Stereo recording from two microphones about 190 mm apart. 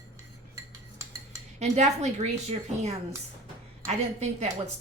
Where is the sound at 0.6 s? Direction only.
15° right (ahead or behind).